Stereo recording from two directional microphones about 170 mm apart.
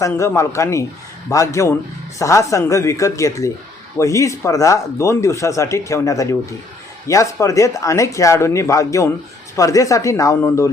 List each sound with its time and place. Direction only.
0.0 s speech: 15° left (ahead or behind)